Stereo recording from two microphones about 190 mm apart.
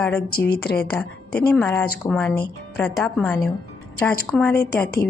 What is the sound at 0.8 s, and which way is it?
Speech, 5° left (ahead or behind).